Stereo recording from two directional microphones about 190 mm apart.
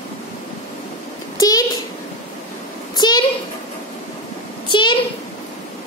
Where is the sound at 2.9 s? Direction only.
20° left (ahead or behind).